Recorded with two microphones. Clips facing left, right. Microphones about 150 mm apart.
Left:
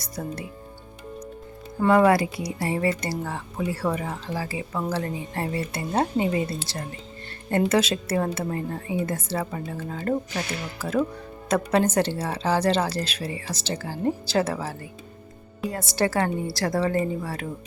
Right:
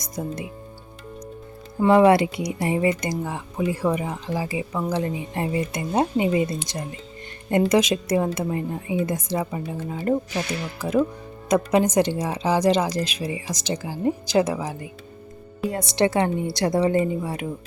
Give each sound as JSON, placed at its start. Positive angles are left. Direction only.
{"t": 0.0, "sound": "speech", "side_deg": -15}
{"t": 1.8, "sound": "a woman's voice", "side_deg": -20}